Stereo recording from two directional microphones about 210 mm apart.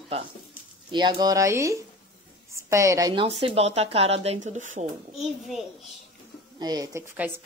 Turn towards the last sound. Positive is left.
turn(degrees=-15)  # may be behind; listen again after turning